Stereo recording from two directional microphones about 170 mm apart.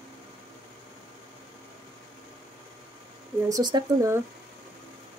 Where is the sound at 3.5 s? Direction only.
25° right (ahead or behind).